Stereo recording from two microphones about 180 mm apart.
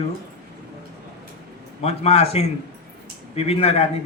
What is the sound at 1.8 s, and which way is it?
A man's voice, 35° left (ahead or behind).